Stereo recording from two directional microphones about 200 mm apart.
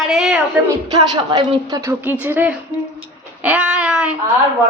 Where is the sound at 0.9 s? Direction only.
20° right (ahead or behind); by 4.2 s 5° right (ahead or behind).